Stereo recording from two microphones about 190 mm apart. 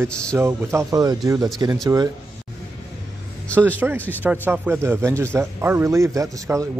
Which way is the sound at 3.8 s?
5° right (ahead or behind).